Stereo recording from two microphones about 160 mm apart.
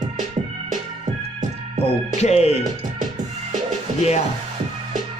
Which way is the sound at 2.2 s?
40° left (ahead or behind).